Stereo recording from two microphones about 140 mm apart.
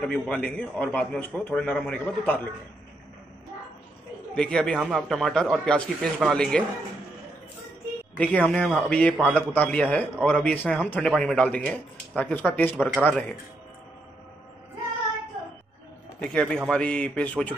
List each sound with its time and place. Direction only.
0.0 s speech: 5° left (ahead or behind)
4.4 s speech: 5° left (ahead or behind)
8.2 s speech: 10° left (ahead or behind)
16.2 s speech: 10° left (ahead or behind)